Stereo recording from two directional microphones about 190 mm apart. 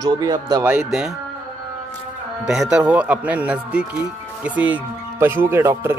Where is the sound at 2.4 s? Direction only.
5° right (ahead or behind).